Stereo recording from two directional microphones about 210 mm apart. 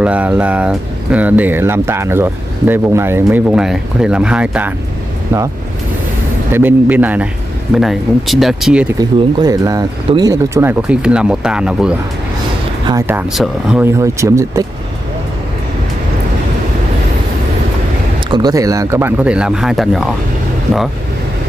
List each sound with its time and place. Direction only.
0.0 s speech: 5° right (ahead or behind)
6.5 s speech: 10° right (ahead or behind)
9.4 s speech: 15° right (ahead or behind)
18.3 s speech: 15° right (ahead or behind); by 20.2 s centre (ahead or behind)